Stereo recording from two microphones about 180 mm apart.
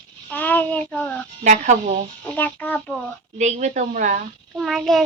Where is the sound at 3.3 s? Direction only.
40° right (ahead or behind).